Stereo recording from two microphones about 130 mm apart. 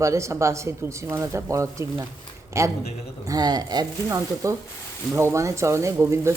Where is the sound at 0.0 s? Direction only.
20° right (ahead or behind).